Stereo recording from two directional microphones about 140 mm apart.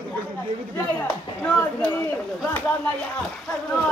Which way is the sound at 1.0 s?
10° left (ahead or behind).